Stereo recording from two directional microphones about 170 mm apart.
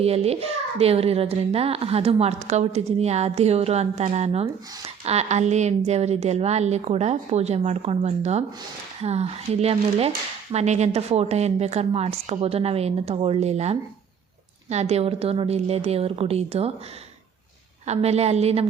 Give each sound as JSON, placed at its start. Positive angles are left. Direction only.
{"t": 0.0, "sound": "a child's voice", "side_deg": -35}
{"t": 17.8, "sound": "a child's voice", "side_deg": -40}